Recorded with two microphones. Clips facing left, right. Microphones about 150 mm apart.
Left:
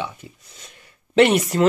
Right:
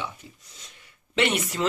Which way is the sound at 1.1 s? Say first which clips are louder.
Left 9 dB; 45° left (ahead or behind).